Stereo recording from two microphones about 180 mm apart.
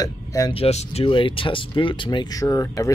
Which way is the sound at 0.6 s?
35° left (ahead or behind).